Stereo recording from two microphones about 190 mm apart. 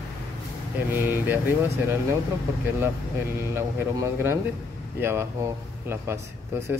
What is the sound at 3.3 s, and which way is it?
A man's voice, 15° right (ahead or behind).